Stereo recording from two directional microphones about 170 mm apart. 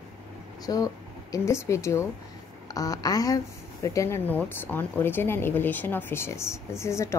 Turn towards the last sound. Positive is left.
turn(degrees=15)  # may be behind; listen again after turning